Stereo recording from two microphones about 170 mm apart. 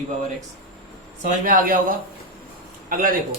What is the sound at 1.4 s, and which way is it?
Speech, 50° right (ahead or behind).